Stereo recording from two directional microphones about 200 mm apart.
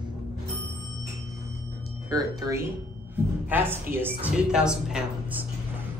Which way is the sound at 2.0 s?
20° right (ahead or behind).